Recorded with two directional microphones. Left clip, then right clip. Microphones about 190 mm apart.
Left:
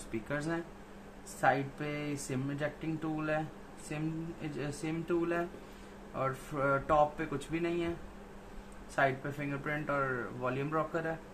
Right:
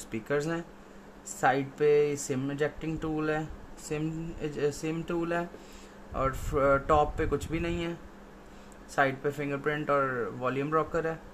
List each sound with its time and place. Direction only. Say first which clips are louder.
0.1 s speech: right 6 dB; 50° right (ahead or behind)
8.9 s speech: right 4 dB; 50° right (ahead or behind)